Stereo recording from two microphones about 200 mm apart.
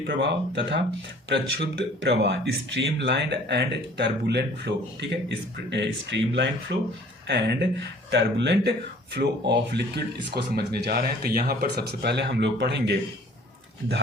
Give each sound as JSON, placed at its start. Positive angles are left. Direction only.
{"t": 0.1, "sound": "speech", "side_deg": -60}